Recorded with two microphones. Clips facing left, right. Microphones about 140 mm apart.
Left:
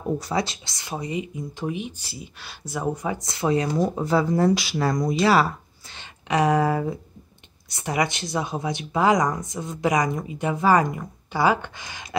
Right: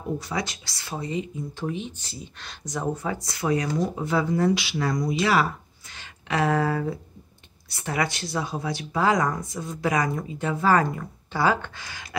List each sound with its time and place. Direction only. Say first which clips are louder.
0.2 s speech: left 4 dB; 35° left (ahead or behind)
5.9 s speech: left 3 dB; 20° left (ahead or behind)